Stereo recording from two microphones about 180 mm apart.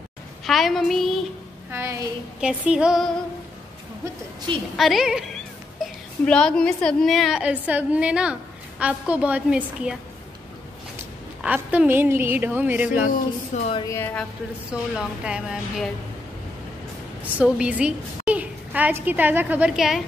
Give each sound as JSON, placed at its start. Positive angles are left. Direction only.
{"t": 0.5, "sound": "a woman's voice", "side_deg": 0}
{"t": 1.7, "sound": "a woman's voice", "side_deg": -15}
{"t": 4.7, "sound": "a woman's voice", "side_deg": 0}
{"t": 5.8, "sound": "a sound", "side_deg": 0}
{"t": 6.2, "sound": "a woman's voice", "side_deg": 5}
{"t": 11.4, "sound": "a woman's voice", "side_deg": -10}
{"t": 13.1, "sound": "speech", "side_deg": 40}
{"t": 13.7, "sound": "speech", "side_deg": 20}
{"t": 14.7, "sound": "a woman's voice", "side_deg": -5}
{"t": 17.2, "sound": "a woman's voice", "side_deg": -10}